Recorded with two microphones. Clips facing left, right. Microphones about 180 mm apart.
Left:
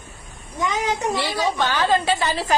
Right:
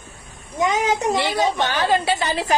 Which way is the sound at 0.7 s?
20° right (ahead or behind).